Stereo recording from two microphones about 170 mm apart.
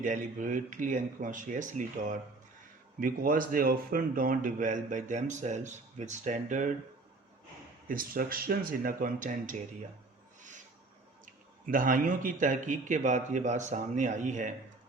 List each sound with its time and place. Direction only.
0.0 s speech: 50° right (ahead or behind)
7.9 s speech: 55° right (ahead or behind)
11.7 s speech: 55° right (ahead or behind)